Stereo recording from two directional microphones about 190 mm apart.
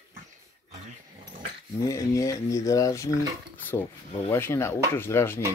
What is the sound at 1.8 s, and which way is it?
Speech, 15° left (ahead or behind).